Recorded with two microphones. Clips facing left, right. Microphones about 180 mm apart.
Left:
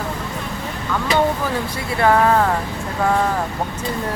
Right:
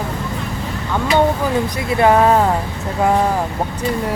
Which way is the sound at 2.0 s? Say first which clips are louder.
Right 2 dB; 20° right (ahead or behind).